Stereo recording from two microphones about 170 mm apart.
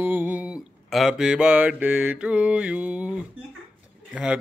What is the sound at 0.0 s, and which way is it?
Mantra, 10° right (ahead or behind).